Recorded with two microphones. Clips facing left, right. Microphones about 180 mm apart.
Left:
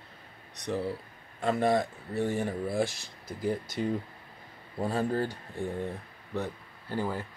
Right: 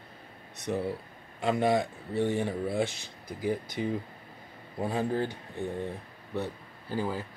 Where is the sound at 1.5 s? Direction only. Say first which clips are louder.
Even; centre (ahead or behind).